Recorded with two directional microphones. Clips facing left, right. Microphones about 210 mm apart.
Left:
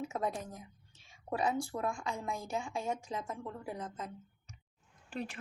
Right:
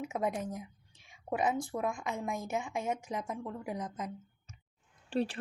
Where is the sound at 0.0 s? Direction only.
15° right (ahead or behind).